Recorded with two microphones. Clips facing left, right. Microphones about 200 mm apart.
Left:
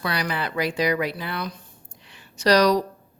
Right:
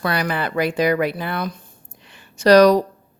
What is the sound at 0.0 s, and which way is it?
A woman's voice, 50° right (ahead or behind).